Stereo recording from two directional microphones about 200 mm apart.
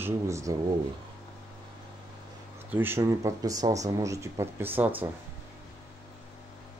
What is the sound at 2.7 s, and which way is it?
Speech, 10° right (ahead or behind).